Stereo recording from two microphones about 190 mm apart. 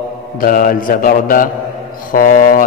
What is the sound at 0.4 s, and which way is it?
A man's voice, 50° left (ahead or behind).